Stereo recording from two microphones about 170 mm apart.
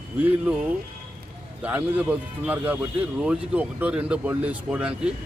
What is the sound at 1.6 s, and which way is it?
A man's voice, 10° right (ahead or behind).